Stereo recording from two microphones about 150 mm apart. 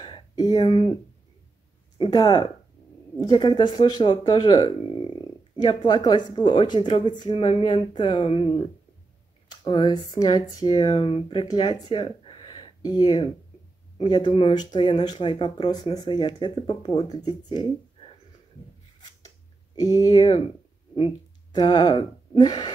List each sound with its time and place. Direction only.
0.0 s a sound: 30° left (ahead or behind)
2.0 s speech: 30° left (ahead or behind)
19.2 s clicking: 25° left (ahead or behind)
21.5 s speech: 30° left (ahead or behind)